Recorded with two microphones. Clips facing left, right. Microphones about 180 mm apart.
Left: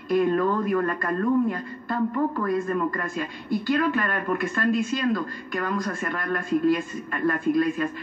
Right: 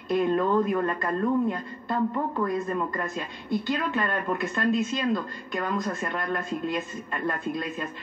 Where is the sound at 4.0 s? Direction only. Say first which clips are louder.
Left 2 dB; 25° right (ahead or behind).